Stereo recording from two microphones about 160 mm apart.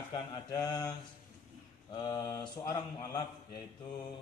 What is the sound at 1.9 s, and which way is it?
A man's voice, 25° left (ahead or behind).